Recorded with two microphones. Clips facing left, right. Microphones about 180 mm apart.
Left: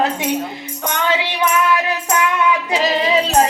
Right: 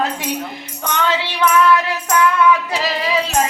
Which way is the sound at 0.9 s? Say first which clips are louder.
Even; 15° left (ahead or behind).